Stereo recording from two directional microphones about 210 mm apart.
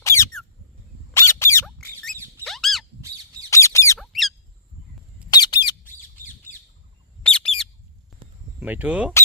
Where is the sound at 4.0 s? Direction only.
Centre (ahead or behind).